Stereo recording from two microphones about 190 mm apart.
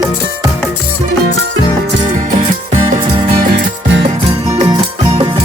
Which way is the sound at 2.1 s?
35° right (ahead or behind).